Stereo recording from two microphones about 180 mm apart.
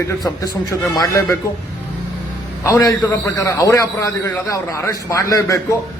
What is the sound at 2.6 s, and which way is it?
A man's voice, 15° left (ahead or behind).